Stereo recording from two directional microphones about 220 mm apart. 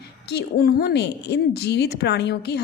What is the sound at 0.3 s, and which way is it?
A woman's voice, 45° left (ahead or behind).